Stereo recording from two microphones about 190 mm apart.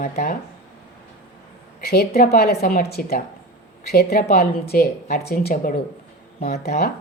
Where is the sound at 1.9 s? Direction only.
55° left (ahead or behind).